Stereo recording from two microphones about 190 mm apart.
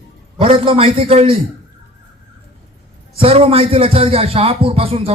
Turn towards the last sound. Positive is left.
turn(degrees=-30)  # may be behind; listen again after turning